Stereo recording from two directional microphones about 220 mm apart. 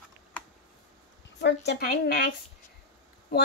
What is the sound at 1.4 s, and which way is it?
Speech, 50° left (ahead or behind).